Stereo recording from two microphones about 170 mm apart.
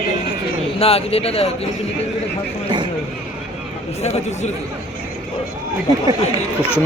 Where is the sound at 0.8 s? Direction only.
35° left (ahead or behind).